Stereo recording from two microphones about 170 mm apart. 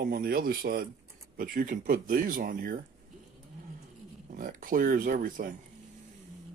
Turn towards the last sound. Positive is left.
turn(degrees=-55)  # may be behind; listen again after turning